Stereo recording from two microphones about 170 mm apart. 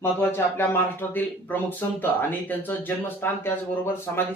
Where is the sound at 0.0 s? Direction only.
15° left (ahead or behind).